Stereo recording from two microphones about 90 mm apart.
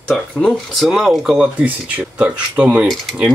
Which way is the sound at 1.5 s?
15° right (ahead or behind).